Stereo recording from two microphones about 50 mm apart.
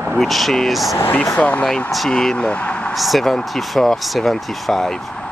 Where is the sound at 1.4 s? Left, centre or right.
Left.